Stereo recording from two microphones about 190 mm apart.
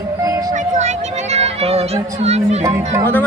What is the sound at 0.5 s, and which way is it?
Speech, 35° right (ahead or behind).